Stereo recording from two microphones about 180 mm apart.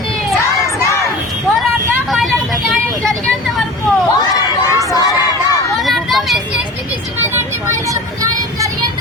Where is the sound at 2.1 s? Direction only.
Centre (ahead or behind).